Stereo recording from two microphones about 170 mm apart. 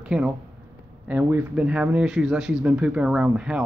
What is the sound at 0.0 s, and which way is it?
Speech, 5° right (ahead or behind).